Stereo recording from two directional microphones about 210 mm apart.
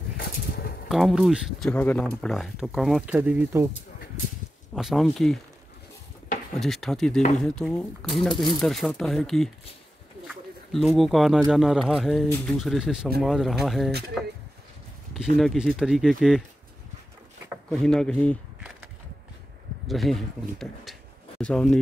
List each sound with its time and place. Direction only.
0.2 s a sound: 45° left (ahead or behind)
0.8 s speech: centre (ahead or behind)
4.7 s speech: centre (ahead or behind)
6.6 s speech: centre (ahead or behind)
15.3 s speech: centre (ahead or behind)
17.6 s speech: centre (ahead or behind)
19.9 s speech: centre (ahead or behind)